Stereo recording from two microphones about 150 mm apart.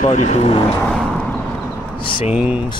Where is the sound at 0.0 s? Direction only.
55° left (ahead or behind).